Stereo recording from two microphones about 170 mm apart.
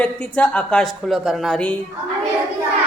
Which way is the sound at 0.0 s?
5° left (ahead or behind).